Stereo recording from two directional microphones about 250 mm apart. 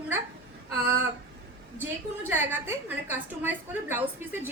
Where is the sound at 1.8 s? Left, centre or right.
Centre.